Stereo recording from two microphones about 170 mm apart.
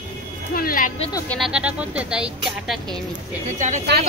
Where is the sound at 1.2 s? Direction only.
Centre (ahead or behind).